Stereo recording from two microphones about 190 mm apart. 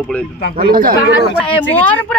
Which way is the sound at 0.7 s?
50° right (ahead or behind).